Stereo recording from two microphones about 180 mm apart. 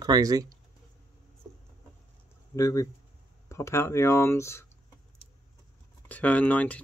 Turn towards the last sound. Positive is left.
turn(degrees=10)  # may be behind; listen again after turning